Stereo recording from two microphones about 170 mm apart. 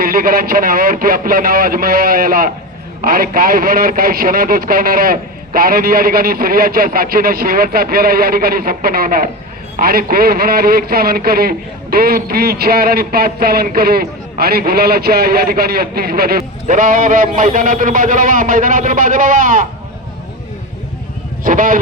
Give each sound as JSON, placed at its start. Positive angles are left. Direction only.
{"t": 0.0, "sound": "speech", "side_deg": -55}
{"t": 21.4, "sound": "a man's voice", "side_deg": -50}